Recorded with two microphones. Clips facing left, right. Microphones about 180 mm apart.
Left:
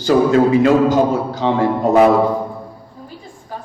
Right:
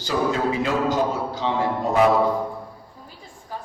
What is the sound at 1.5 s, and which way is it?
Speech, 90° left.